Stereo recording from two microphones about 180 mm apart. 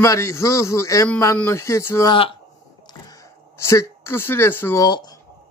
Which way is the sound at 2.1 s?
30° left (ahead or behind).